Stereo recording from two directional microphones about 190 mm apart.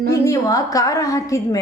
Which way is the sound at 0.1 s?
20° left (ahead or behind).